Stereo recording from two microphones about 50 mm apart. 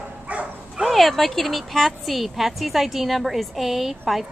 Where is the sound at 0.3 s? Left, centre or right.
Right.